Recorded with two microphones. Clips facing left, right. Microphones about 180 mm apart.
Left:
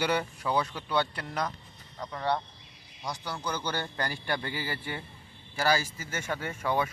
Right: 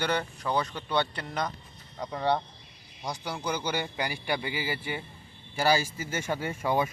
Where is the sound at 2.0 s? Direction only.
20° right (ahead or behind).